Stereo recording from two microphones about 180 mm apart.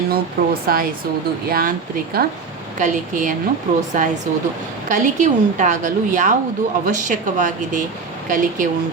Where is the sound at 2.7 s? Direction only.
45° right (ahead or behind).